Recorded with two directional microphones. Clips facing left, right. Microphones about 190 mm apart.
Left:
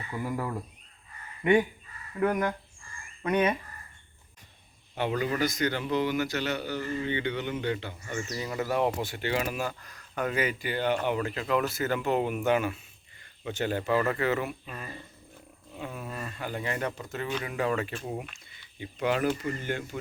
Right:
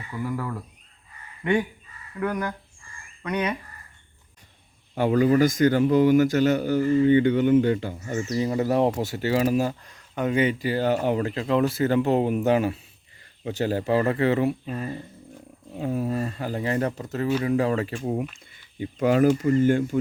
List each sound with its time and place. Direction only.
0.1 s speech: 20° left (ahead or behind)
4.9 s a man's voice: 40° right (ahead or behind)
8.3 s speech: 30° right (ahead or behind)
18.0 s a man's voice: 40° right (ahead or behind)
18.3 s a sound: 45° right (ahead or behind)
19.4 s a man's voice: 45° right (ahead or behind)